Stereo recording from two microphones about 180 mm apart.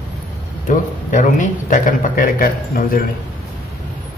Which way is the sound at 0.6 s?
45° left (ahead or behind).